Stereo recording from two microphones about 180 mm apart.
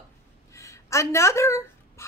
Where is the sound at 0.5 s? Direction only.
15° left (ahead or behind).